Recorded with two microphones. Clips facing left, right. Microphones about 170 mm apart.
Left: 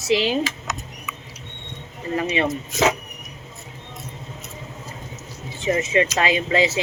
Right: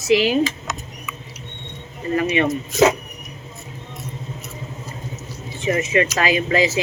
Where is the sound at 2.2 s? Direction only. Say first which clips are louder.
Right 3 dB; 30° left (ahead or behind).